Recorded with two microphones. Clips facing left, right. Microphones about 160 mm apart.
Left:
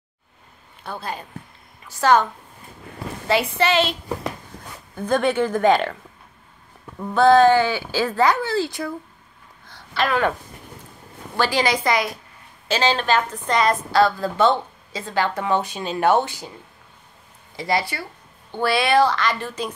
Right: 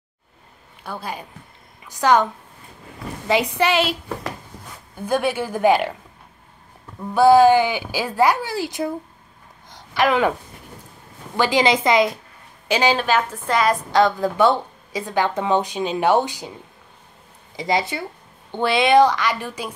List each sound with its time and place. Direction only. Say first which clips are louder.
0.8 s speech: even; 10° right (ahead or behind)
3.3 s speech: right 1 dB; 15° right (ahead or behind)
4.9 s speech: left 2 dB; 10° right (ahead or behind)
7.2 s speech: right 1 dB; 10° right (ahead or behind)
9.7 s a sound: right 4 dB; 15° right (ahead or behind)
11.3 s a woman's voice: right 3 dB; 15° right (ahead or behind)
13.9 s speech: right 1 dB; 20° right (ahead or behind)
17.6 s a woman's voice: right 1 dB; 20° right (ahead or behind)